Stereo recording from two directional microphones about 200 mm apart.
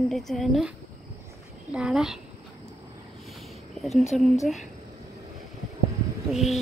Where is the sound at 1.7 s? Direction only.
5° right (ahead or behind).